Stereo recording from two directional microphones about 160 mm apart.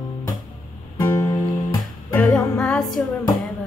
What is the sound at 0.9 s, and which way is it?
Music, 20° left (ahead or behind).